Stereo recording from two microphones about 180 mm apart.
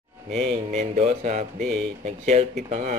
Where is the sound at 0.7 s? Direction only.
40° right (ahead or behind).